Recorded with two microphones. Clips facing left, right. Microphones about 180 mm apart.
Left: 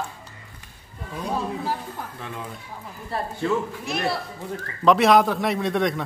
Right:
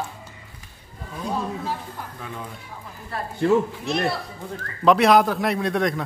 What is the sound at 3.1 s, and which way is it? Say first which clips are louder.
Speech: left 2 dB; 30° left (ahead or behind).